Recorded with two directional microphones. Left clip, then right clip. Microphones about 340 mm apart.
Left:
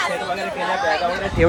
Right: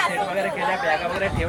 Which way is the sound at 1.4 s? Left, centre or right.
Left.